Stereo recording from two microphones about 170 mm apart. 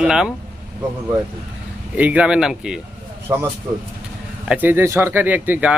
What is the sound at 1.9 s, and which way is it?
Speech, 10° right (ahead or behind).